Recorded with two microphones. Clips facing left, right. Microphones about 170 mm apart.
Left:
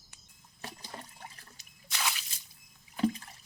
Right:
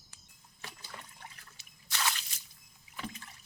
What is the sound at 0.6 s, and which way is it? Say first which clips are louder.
Liquid: left 4 dB; 35° left (ahead or behind).